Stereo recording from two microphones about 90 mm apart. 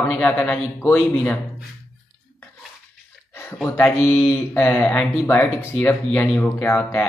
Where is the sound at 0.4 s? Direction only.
25° left (ahead or behind).